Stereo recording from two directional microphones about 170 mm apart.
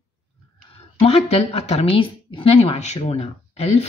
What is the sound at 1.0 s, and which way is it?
Speech, 35° left (ahead or behind).